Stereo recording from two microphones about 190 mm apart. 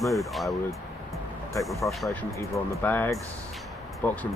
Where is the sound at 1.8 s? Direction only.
5° left (ahead or behind).